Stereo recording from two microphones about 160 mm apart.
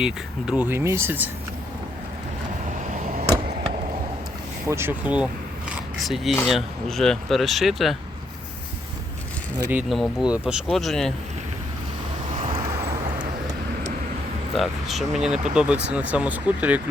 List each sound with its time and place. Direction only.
0.0 s speech: 5° right (ahead or behind)
3.2 s a sound: 30° right (ahead or behind)
4.7 s speech: 15° right (ahead or behind)
9.6 s speech: 10° right (ahead or behind)
12.5 s vehicle: 25° right (ahead or behind)
14.5 s speech: centre (ahead or behind)